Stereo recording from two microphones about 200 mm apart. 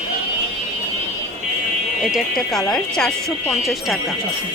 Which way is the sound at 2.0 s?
Centre (ahead or behind).